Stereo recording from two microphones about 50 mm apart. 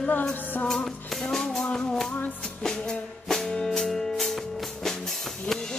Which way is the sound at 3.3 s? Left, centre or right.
Centre.